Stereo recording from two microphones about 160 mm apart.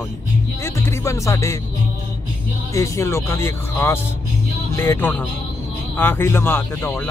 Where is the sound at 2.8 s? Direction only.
20° left (ahead or behind).